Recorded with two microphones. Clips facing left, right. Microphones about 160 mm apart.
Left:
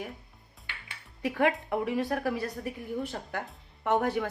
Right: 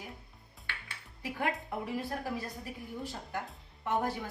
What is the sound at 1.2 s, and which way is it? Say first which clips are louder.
A woman's voice: left 8 dB; 75° left (ahead or behind).